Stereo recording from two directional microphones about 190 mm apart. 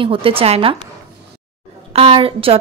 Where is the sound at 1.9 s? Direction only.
30° right (ahead or behind).